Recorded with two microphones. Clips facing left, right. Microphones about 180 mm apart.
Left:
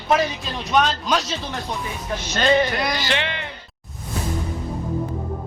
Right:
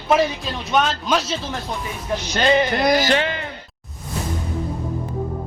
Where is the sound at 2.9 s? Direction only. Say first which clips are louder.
Right 7 dB; 45° right (ahead or behind).